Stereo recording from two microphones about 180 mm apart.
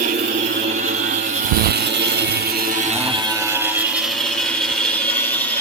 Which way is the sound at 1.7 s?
65° right (ahead or behind).